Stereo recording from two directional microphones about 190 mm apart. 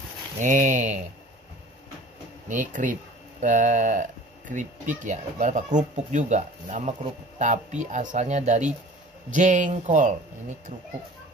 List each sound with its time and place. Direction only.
0.4 s speech: 40° right (ahead or behind)
2.4 s speech: 40° right (ahead or behind)